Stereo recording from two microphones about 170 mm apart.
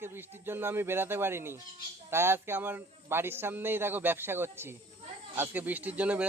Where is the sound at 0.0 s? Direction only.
15° right (ahead or behind).